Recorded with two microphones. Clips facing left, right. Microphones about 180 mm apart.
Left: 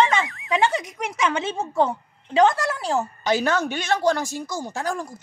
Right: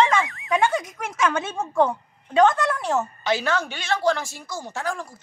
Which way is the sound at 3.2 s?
40° left (ahead or behind).